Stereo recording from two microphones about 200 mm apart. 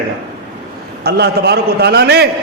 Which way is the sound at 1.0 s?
55° right (ahead or behind).